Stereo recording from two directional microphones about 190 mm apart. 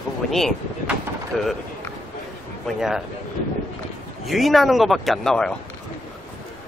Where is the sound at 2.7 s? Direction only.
Centre (ahead or behind).